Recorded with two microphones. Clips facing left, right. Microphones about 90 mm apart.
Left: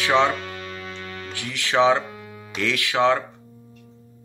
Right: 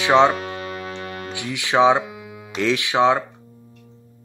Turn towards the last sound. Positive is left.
turn(degrees=-20)  # may be behind; listen again after turning